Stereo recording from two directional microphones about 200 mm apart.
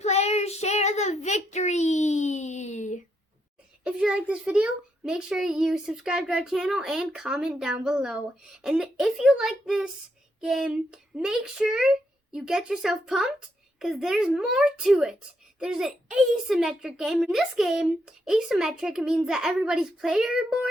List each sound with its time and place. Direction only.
0.0 s child singing: 35° left (ahead or behind)
3.8 s a child's voice: 5° right (ahead or behind)